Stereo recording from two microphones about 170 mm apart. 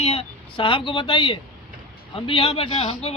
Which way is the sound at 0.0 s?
35° left (ahead or behind).